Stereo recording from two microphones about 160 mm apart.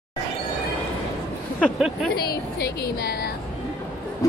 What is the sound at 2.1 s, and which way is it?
A woman's voice, 85° left.